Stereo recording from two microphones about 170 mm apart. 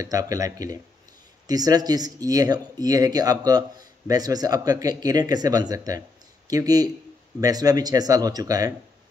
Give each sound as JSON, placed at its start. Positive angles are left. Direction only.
{"t": 0.0, "sound": "speech", "side_deg": -20}